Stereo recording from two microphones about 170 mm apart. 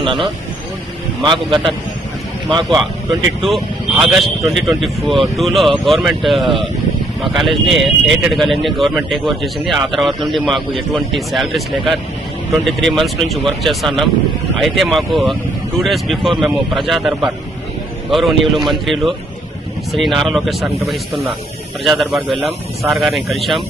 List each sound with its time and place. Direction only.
0.0 s speech: centre (ahead or behind)
1.2 s a man's voice: 30° right (ahead or behind)
3.4 s speech: centre (ahead or behind)